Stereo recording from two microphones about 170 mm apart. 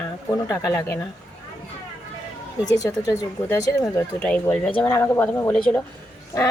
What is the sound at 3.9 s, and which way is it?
A woman's voice, 5° left (ahead or behind).